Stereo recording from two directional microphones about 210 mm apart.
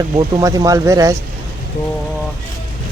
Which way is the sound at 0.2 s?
20° right (ahead or behind).